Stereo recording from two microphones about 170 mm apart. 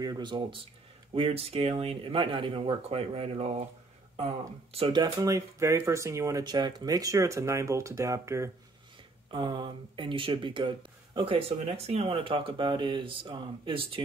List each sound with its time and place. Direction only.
0.0 s speech: 25° right (ahead or behind)
9.3 s speech: 25° right (ahead or behind)